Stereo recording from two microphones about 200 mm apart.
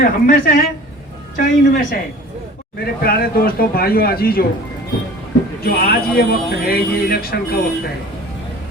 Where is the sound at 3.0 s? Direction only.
50° left (ahead or behind).